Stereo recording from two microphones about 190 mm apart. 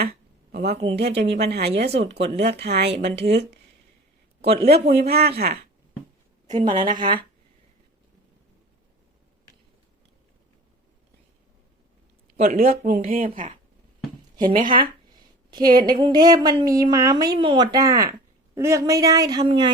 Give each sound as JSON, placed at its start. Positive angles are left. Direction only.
{"t": 0.9, "sound": "a man's voice", "side_deg": -65}
{"t": 6.5, "sound": "speech", "side_deg": -25}
{"t": 6.8, "sound": "speech", "side_deg": -45}
{"t": 12.4, "sound": "speech", "side_deg": -50}
{"t": 15.5, "sound": "speech", "side_deg": -25}